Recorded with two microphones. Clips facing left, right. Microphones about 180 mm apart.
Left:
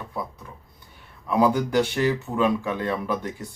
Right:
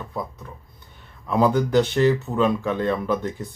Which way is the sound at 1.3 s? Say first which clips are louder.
Right 2 dB; 10° left (ahead or behind).